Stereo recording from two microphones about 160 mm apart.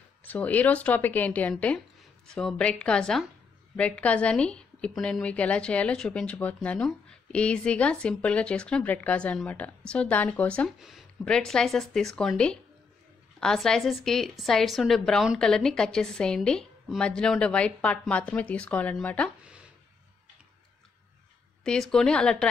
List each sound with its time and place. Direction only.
0.2 s a woman's voice: 10° left (ahead or behind)
19.4 s a sound: 5° right (ahead or behind)
21.6 s a woman's voice: 5° left (ahead or behind)